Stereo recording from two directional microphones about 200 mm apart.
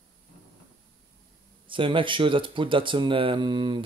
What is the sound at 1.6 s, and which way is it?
Speech, 25° right (ahead or behind).